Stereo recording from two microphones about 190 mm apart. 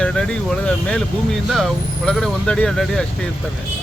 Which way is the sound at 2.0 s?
5° left (ahead or behind).